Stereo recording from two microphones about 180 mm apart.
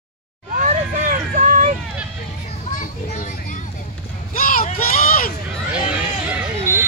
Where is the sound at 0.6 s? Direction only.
45° right (ahead or behind).